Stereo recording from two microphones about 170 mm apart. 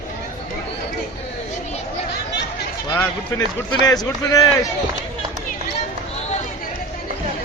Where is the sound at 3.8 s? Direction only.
20° left (ahead or behind).